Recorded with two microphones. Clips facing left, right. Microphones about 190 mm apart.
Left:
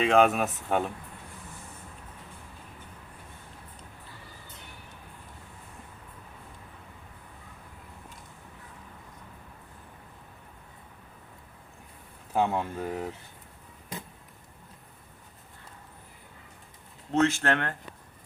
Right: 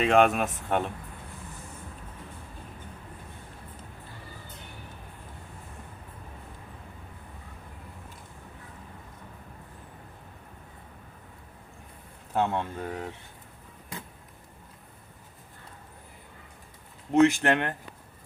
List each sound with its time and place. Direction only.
0.0 s speech: centre (ahead or behind)
12.3 s speech: 10° left (ahead or behind)
17.1 s speech: 15° right (ahead or behind)